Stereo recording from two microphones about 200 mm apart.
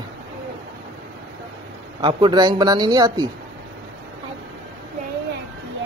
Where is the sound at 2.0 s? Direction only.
25° right (ahead or behind).